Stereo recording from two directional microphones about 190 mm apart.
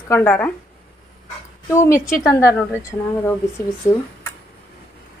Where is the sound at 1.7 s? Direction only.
15° left (ahead or behind).